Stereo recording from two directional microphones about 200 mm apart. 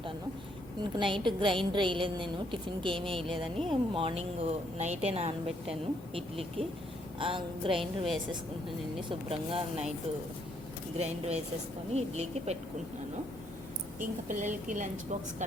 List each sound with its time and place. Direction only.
0.8 s a woman's voice: 25° right (ahead or behind)
3.2 s speech: centre (ahead or behind)
3.7 s a woman's voice: 25° right (ahead or behind)
7.8 s speech: centre (ahead or behind)
9.0 s a woman's voice: 30° right (ahead or behind)
10.9 s a woman's voice: 30° right (ahead or behind)
14.0 s a woman's voice: 40° right (ahead or behind)